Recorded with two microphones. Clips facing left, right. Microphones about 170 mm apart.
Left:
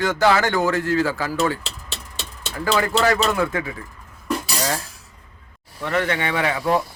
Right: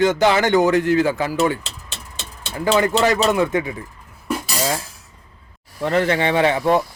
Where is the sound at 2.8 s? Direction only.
20° right (ahead or behind).